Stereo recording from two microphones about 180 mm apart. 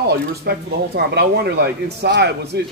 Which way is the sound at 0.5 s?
60° right (ahead or behind).